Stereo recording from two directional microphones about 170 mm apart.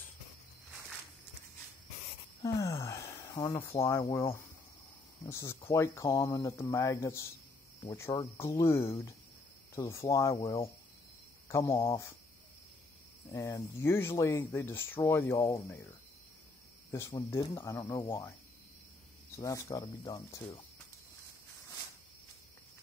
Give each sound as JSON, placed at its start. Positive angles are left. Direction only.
{"t": 2.4, "sound": "a sound", "side_deg": 20}
{"t": 3.8, "sound": "speech", "side_deg": 15}
{"t": 11.4, "sound": "speech", "side_deg": 15}
{"t": 13.3, "sound": "speech", "side_deg": 20}
{"t": 16.9, "sound": "speech", "side_deg": 15}
{"t": 19.3, "sound": "speech", "side_deg": 20}